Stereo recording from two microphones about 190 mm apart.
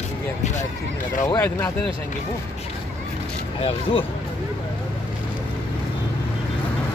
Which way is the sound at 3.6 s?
30° left (ahead or behind).